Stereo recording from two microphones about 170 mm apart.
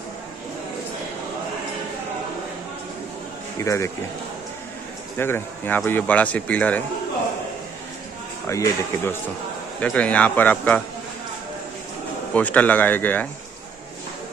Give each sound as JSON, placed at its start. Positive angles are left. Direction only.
{"t": 3.5, "sound": "a man's voice", "side_deg": 15}
{"t": 5.1, "sound": "a man's voice", "side_deg": 15}
{"t": 8.5, "sound": "a man's voice", "side_deg": 15}
{"t": 12.4, "sound": "a man's voice", "side_deg": 10}